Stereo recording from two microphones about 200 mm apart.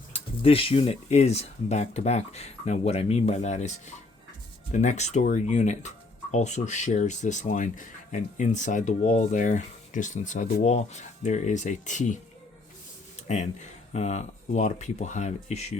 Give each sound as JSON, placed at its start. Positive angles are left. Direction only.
{"t": 0.1, "sound": "speech", "side_deg": 30}
{"t": 13.2, "sound": "speech", "side_deg": 35}